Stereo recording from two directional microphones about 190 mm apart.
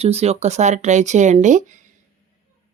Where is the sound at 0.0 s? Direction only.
35° right (ahead or behind).